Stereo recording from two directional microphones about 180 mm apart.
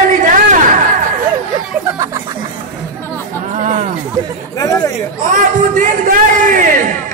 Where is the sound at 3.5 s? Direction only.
45° right (ahead or behind).